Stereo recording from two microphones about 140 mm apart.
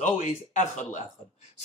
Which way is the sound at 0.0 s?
60° left (ahead or behind).